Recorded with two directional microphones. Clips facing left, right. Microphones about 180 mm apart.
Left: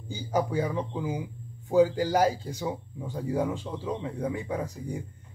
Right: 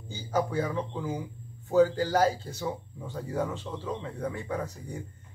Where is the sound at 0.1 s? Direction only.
10° left (ahead or behind).